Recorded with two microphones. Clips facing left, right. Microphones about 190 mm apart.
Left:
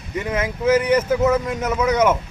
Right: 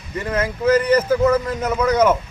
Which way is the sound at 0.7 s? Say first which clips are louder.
Right 1 dB; 20° left (ahead or behind).